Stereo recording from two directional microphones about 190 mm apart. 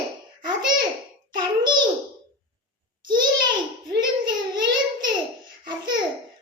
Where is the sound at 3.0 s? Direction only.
25° right (ahead or behind).